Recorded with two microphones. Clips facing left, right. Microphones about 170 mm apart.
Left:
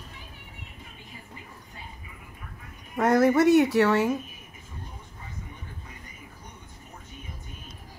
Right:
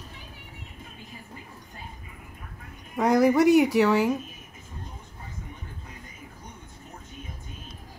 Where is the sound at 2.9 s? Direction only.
Centre (ahead or behind).